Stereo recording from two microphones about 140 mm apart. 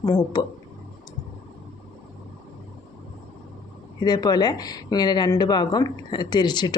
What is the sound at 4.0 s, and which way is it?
Speech, 30° left (ahead or behind).